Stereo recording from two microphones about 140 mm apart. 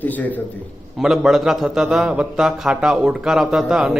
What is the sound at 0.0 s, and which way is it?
Speech, 10° left (ahead or behind).